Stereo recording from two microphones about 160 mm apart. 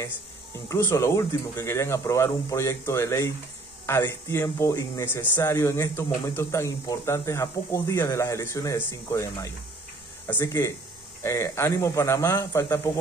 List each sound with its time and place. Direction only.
0.7 s speech: 20° left (ahead or behind)